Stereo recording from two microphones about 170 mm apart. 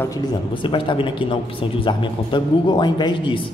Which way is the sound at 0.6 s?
30° left (ahead or behind).